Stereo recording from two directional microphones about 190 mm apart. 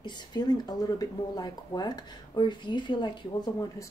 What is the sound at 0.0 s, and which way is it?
Speech, 20° left (ahead or behind).